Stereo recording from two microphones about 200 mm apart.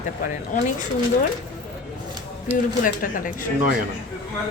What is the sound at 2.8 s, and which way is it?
Speech, 40° left (ahead or behind).